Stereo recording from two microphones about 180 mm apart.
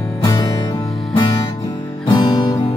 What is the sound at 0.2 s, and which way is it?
Music, 25° left (ahead or behind).